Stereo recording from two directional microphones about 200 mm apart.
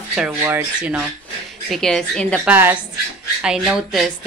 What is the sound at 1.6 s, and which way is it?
Speech, centre (ahead or behind).